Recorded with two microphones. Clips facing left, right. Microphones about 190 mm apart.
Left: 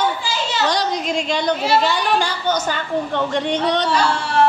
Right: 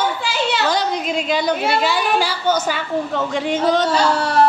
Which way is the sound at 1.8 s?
5° right (ahead or behind).